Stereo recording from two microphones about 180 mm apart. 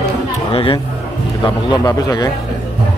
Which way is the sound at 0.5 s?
30° left (ahead or behind).